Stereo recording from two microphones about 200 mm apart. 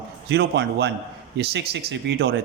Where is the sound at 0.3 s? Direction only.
60° right (ahead or behind).